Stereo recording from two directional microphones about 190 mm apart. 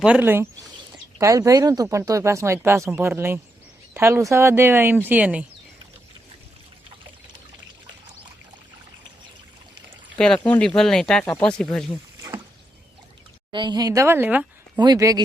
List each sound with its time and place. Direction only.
0.0 s speech: 10° right (ahead or behind)
10.2 s speech: 5° left (ahead or behind)
13.5 s speech: 25° right (ahead or behind)